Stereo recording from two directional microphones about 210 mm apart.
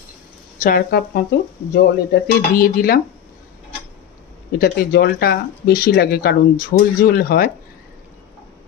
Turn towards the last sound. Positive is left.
turn(degrees=45)  # may be behind; listen again after turning